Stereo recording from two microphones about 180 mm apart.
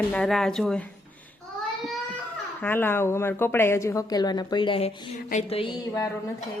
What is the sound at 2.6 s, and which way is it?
A woman's voice, 10° left (ahead or behind).